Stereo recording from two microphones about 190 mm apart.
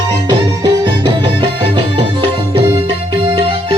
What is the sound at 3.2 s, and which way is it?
Music, 30° right (ahead or behind).